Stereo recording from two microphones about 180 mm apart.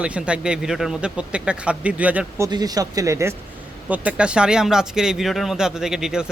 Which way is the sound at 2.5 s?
20° right (ahead or behind).